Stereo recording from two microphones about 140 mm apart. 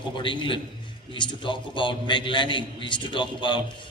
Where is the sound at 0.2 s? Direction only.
35° left (ahead or behind).